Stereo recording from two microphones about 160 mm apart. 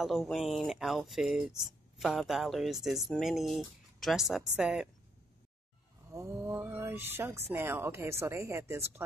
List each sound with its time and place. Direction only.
0.0 s speech: centre (ahead or behind)
6.1 s speech: 15° right (ahead or behind)